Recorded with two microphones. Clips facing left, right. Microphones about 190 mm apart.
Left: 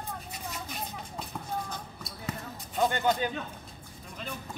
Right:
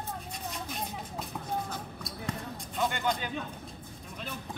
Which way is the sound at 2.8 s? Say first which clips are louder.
Left 4 dB; 40° left (ahead or behind).